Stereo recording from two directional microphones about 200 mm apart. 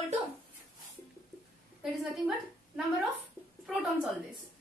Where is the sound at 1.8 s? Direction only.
5° right (ahead or behind).